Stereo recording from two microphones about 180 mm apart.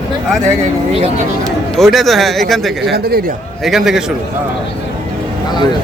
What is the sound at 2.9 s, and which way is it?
Speech, 60° right (ahead or behind).